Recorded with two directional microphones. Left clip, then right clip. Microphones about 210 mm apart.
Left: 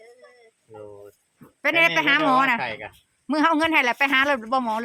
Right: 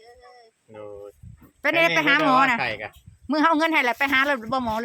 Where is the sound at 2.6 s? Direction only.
50° right (ahead or behind).